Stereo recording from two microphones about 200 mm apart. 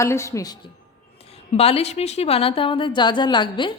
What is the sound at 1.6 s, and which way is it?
A woman's voice, 30° left (ahead or behind).